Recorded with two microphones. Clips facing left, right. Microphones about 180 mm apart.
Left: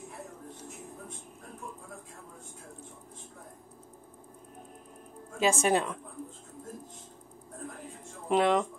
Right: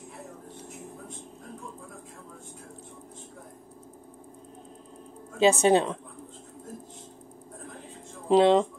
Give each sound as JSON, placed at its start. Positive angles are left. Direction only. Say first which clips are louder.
{"t": 5.4, "sound": "speech", "louder": "right 6 dB", "side_deg": -30}
{"t": 8.3, "sound": "speech", "louder": "right 6 dB", "side_deg": -30}